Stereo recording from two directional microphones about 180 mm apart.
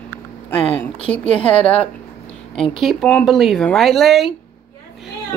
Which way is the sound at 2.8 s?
Centre (ahead or behind).